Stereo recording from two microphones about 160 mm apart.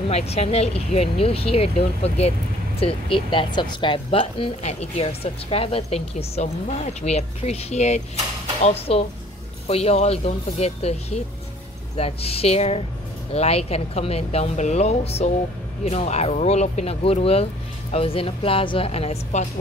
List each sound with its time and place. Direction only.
0.1 s speech: 40° left (ahead or behind)